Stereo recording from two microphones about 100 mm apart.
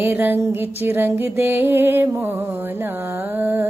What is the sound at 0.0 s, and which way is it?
Music, 20° right (ahead or behind).